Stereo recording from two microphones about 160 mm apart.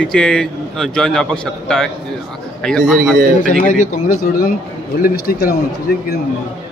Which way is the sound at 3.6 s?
50° left (ahead or behind).